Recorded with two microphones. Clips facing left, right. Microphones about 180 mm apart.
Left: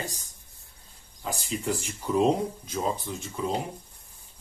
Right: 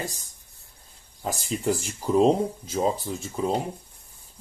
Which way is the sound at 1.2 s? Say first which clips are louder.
Right 4 dB; 35° right (ahead or behind).